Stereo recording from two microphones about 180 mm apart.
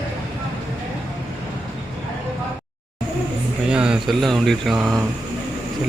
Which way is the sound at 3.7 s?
5° right (ahead or behind).